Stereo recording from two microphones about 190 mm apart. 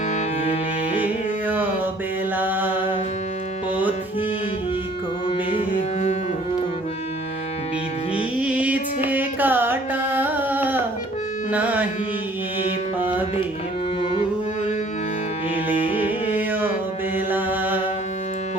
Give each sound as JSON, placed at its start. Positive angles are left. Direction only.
{"t": 1.0, "sound": "music", "side_deg": -10}
{"t": 2.3, "sound": "mantra", "side_deg": -10}
{"t": 5.5, "sound": "music", "side_deg": 40}
{"t": 8.4, "sound": "music", "side_deg": -5}
{"t": 11.5, "sound": "carnatic music", "side_deg": -10}
{"t": 13.0, "sound": "music", "side_deg": -10}
{"t": 14.0, "sound": "music", "side_deg": 30}
{"t": 16.0, "sound": "music", "side_deg": -10}
{"t": 17.2, "sound": "mantra", "side_deg": -10}